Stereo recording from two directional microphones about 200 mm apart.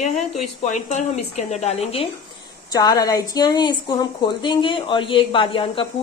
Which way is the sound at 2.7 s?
20° left (ahead or behind).